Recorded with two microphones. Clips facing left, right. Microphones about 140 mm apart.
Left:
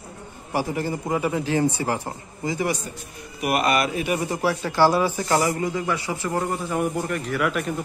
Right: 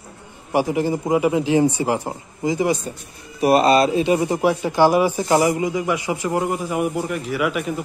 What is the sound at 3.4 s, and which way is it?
Speech, 30° right (ahead or behind).